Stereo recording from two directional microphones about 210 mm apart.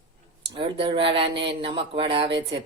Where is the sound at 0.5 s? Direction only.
25° right (ahead or behind).